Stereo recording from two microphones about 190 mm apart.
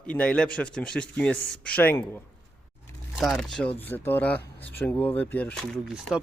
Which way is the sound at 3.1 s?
Centre (ahead or behind).